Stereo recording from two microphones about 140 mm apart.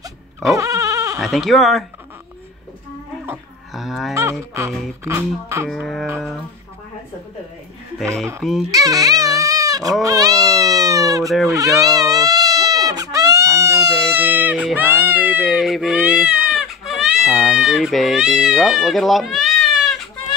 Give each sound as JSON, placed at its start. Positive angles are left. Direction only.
{"t": 0.0, "sound": "dog", "side_deg": -25}
{"t": 1.2, "sound": "speech", "side_deg": 0}
{"t": 3.7, "sound": "livestock", "side_deg": 0}
{"t": 4.1, "sound": "speech", "side_deg": -20}
{"t": 5.7, "sound": "speech", "side_deg": 5}
{"t": 8.4, "sound": "speech", "side_deg": 0}
{"t": 8.7, "sound": "a sound", "side_deg": -25}
{"t": 10.0, "sound": "speech", "side_deg": -25}
{"t": 11.4, "sound": "baby cry", "side_deg": -25}